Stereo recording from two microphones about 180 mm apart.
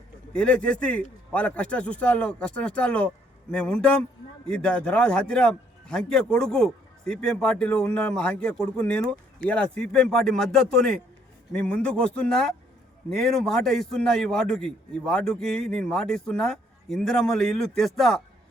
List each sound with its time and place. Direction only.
0.3 s a man's voice: 5° left (ahead or behind)